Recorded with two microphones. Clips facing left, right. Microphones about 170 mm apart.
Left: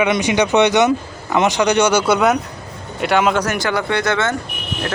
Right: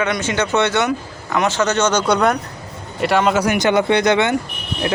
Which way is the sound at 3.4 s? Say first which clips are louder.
Right 4 dB; 20° right (ahead or behind).